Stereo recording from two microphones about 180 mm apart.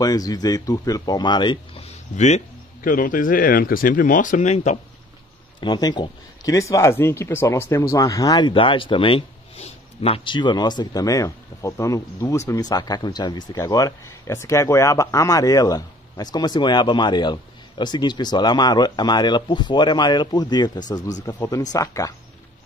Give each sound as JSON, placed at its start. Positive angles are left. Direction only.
{"t": 0.0, "sound": "speech", "side_deg": 20}
{"t": 2.1, "sound": "speech", "side_deg": 40}
{"t": 5.6, "sound": "speech", "side_deg": 25}